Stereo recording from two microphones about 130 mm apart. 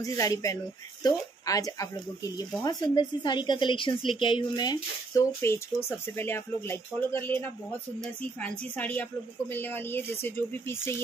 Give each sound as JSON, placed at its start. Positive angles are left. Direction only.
{"t": 0.0, "sound": "speech", "side_deg": 25}
{"t": 5.4, "sound": "speech", "side_deg": 20}